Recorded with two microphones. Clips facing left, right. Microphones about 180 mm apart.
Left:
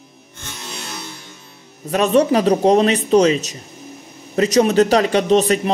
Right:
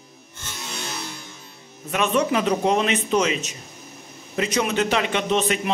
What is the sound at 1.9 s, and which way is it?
Speech, 35° left (ahead or behind).